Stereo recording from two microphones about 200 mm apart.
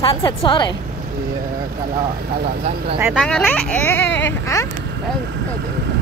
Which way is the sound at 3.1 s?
5° left (ahead or behind).